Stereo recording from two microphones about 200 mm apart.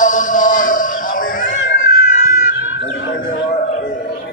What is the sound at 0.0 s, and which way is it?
Music, 40° left (ahead or behind).